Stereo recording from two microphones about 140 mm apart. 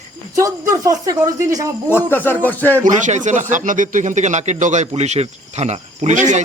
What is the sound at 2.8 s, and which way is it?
Speech, 60° right (ahead or behind).